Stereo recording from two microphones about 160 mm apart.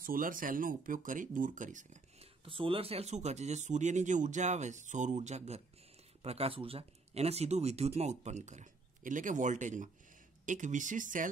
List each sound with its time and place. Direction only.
0.0 s speech: 60° right (ahead or behind)
2.4 s speech: 35° right (ahead or behind); by 11.2 s 55° right (ahead or behind)